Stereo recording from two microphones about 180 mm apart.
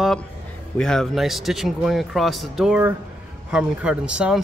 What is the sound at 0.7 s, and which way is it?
Speech, 5° left (ahead or behind).